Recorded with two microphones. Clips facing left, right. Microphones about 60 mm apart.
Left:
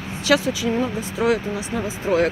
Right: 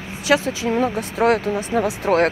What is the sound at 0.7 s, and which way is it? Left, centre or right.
Speech, right.